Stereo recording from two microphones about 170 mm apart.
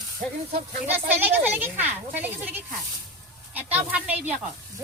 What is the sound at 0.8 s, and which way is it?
Speech, 10° right (ahead or behind).